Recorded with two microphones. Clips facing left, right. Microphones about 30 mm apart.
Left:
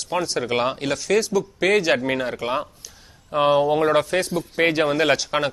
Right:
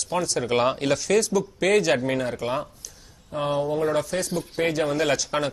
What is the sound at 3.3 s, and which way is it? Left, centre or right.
Speech, left.